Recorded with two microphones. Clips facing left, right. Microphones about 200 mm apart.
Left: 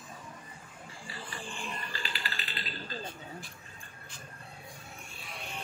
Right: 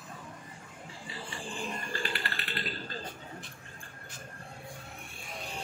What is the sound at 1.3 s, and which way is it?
Typewriter, 40° right (ahead or behind).